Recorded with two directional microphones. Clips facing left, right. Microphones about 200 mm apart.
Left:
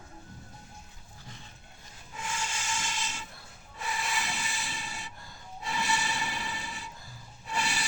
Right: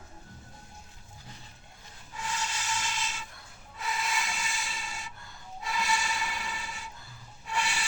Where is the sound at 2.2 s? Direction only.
25° left (ahead or behind).